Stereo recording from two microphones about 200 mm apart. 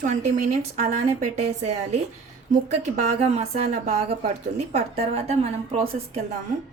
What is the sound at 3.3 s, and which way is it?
A woman's voice, 30° right (ahead or behind).